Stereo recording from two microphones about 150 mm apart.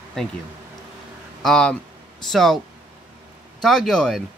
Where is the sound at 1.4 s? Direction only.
5° left (ahead or behind).